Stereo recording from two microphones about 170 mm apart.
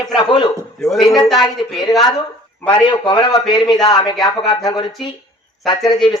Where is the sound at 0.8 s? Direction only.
Centre (ahead or behind).